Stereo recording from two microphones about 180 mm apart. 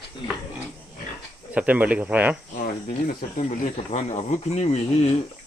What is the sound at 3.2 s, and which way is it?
Speech, 45° left (ahead or behind).